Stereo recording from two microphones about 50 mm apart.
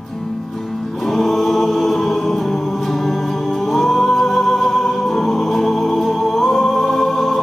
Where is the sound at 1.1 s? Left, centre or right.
Centre.